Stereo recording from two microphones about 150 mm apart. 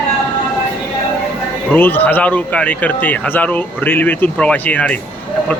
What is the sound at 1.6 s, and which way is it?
Speech, 15° left (ahead or behind).